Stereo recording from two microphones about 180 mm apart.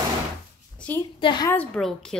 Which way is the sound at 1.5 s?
5° left (ahead or behind).